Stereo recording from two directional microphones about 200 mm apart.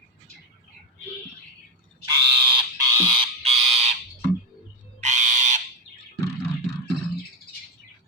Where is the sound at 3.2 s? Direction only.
30° right (ahead or behind).